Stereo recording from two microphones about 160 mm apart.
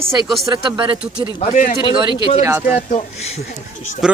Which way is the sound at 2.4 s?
10° right (ahead or behind).